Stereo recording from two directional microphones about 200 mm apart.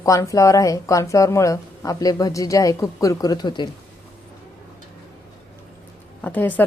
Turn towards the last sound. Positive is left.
turn(degrees=10)  # may be behind; listen again after turning